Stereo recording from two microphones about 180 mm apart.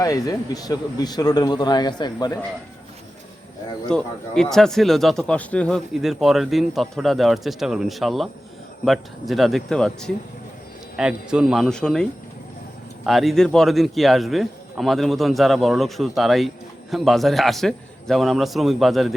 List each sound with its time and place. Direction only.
0.0 s a man's voice: 20° left (ahead or behind)
3.8 s speech: 5° left (ahead or behind)
13.1 s speech: centre (ahead or behind)